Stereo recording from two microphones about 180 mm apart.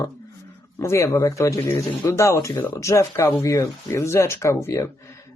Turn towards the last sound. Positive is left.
turn(degrees=15)  # may be behind; listen again after turning